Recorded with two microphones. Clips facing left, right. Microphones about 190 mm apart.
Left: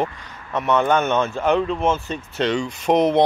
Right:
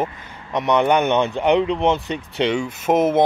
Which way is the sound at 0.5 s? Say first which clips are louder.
Right 1 dB; 15° right (ahead or behind).